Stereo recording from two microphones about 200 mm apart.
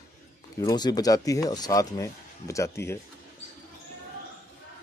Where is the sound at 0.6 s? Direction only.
20° left (ahead or behind).